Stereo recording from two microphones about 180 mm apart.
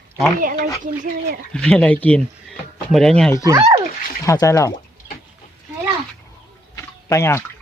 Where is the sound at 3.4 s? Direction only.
20° right (ahead or behind).